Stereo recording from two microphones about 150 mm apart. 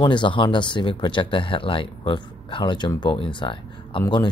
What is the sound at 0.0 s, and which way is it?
Speech, 30° left (ahead or behind).